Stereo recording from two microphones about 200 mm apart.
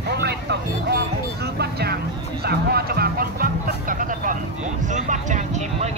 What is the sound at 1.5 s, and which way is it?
Music, 55° right (ahead or behind).